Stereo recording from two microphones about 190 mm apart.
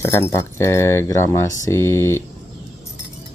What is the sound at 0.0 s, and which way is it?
Speech, 15° left (ahead or behind).